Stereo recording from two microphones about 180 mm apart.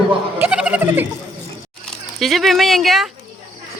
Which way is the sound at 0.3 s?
10° right (ahead or behind).